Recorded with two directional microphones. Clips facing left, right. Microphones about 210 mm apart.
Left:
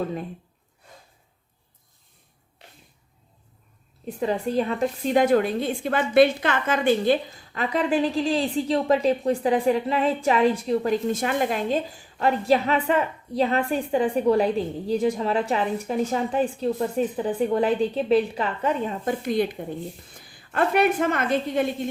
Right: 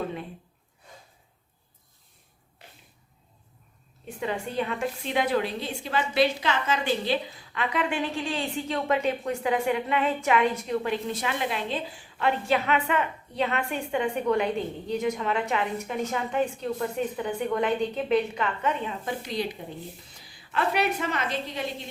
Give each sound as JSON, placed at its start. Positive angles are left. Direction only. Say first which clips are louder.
{"t": 4.0, "sound": "a woman's voice", "louder": "left 6 dB", "side_deg": 35}